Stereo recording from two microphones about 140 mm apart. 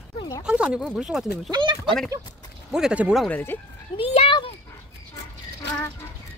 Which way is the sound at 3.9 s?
45° left (ahead or behind).